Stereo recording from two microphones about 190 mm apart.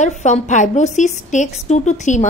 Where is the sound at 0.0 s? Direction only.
40° left (ahead or behind).